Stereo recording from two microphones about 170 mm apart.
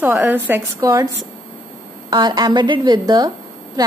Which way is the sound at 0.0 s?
10° right (ahead or behind).